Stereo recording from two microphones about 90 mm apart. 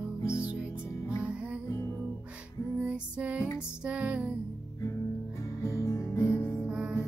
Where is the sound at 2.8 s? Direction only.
15° right (ahead or behind).